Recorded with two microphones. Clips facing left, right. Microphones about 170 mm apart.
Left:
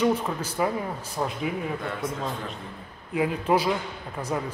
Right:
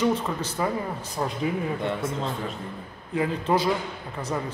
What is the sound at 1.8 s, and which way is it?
Speech, 25° right (ahead or behind).